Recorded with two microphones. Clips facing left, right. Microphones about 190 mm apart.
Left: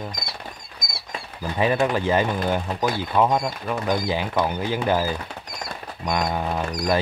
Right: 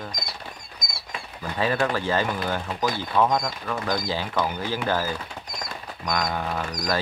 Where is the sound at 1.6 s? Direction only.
20° left (ahead or behind).